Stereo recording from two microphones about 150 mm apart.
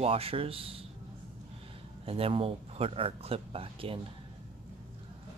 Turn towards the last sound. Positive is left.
turn(degrees=-40)  # may be behind; listen again after turning